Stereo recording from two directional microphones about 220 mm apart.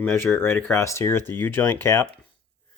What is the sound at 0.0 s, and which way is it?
Speech, 10° left (ahead or behind).